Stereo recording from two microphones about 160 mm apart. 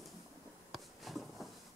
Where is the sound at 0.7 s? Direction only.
Centre (ahead or behind).